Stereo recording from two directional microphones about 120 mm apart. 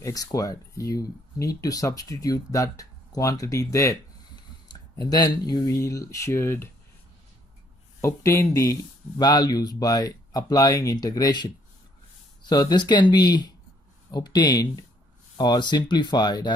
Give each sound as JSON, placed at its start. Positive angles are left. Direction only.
{"t": 0.0, "sound": "speech", "side_deg": 30}
{"t": 8.0, "sound": "speech", "side_deg": 25}